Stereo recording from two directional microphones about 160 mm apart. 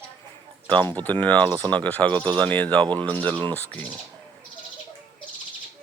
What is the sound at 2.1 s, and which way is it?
Speech, 25° right (ahead or behind).